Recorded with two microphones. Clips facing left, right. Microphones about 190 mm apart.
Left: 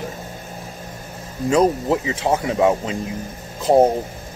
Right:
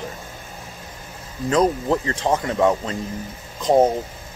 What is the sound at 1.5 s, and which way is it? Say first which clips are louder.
Speech: left 2 dB; 10° left (ahead or behind).